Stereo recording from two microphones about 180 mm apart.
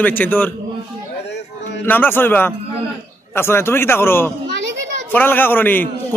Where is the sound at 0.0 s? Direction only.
10° left (ahead or behind).